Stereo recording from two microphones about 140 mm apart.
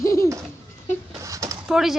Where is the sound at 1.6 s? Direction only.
5° right (ahead or behind).